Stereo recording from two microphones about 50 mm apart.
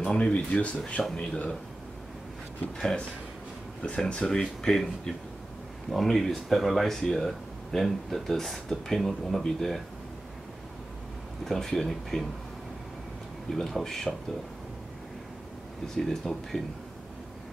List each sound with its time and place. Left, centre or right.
0.0 s speech: centre
2.8 s speech: centre
11.4 s speech: centre
13.5 s speech: centre
16.1 s speech: centre